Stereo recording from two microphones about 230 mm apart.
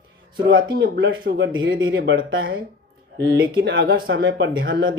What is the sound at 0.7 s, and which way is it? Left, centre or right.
Speech, right.